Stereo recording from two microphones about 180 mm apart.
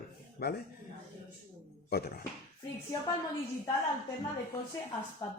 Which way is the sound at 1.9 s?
60° left (ahead or behind).